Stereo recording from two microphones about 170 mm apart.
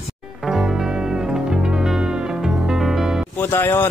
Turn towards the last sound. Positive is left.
turn(degrees=15)  # may be behind; listen again after turning